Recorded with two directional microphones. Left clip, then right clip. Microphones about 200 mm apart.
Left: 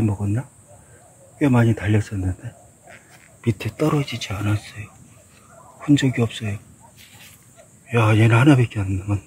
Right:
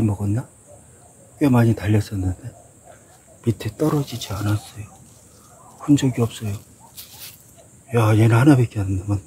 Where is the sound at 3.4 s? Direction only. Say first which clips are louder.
Even; 5° left (ahead or behind).